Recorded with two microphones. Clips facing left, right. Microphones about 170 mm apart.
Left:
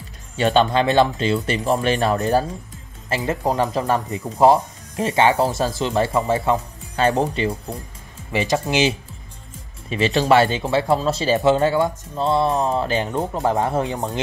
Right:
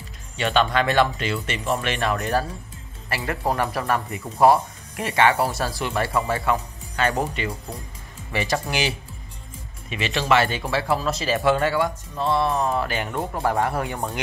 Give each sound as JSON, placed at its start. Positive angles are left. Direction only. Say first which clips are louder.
{"t": 0.4, "sound": "speech", "louder": "left 4 dB", "side_deg": 30}
{"t": 3.1, "sound": "speech", "louder": "left 4 dB", "side_deg": 20}
{"t": 8.3, "sound": "speech", "louder": "left 4 dB", "side_deg": 20}
{"t": 9.8, "sound": "speech", "louder": "left 5 dB", "side_deg": 35}